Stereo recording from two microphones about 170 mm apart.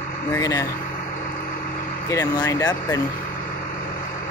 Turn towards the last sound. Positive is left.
turn(degrees=20)  # may be behind; listen again after turning